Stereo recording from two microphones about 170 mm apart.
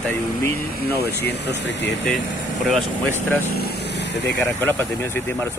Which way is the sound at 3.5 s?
70° left (ahead or behind).